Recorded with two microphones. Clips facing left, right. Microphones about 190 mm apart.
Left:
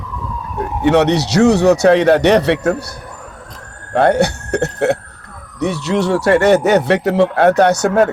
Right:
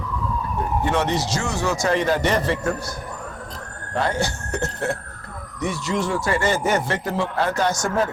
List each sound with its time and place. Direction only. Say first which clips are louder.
0.9 s speech: left 12 dB; 70° left (ahead or behind)
3.9 s speech: left 11 dB; 65° left (ahead or behind)